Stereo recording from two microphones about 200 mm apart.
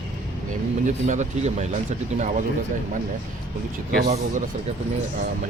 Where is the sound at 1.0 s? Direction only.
35° right (ahead or behind).